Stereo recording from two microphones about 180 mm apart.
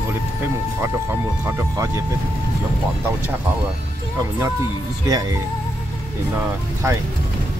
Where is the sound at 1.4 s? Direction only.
15° right (ahead or behind).